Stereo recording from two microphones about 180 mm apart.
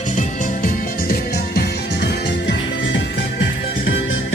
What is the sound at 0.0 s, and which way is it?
Music, 45° left (ahead or behind).